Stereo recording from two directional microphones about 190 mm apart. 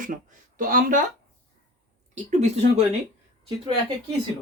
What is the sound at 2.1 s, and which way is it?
Speech, 40° right (ahead or behind).